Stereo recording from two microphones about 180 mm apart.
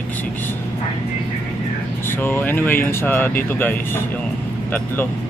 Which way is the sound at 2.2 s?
10° left (ahead or behind).